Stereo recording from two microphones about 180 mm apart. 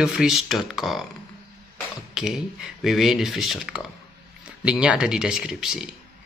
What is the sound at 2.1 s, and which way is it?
A man's voice, centre (ahead or behind).